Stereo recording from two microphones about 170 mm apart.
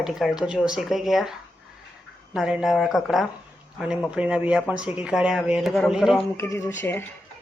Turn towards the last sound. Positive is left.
turn(degrees=10)  # may be behind; listen again after turning